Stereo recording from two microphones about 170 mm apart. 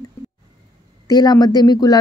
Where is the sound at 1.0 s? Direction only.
25° left (ahead or behind).